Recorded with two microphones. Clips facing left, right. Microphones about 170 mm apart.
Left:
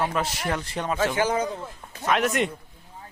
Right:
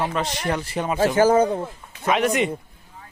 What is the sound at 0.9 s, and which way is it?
Speech, 40° right (ahead or behind).